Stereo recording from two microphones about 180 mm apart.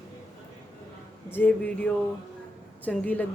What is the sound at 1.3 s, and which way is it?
Speech, 10° left (ahead or behind).